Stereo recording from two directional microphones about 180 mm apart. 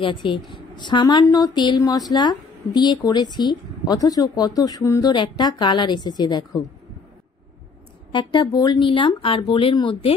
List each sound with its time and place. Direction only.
0.0 s a woman's voice: 25° left (ahead or behind)
8.1 s a woman's voice: 25° left (ahead or behind)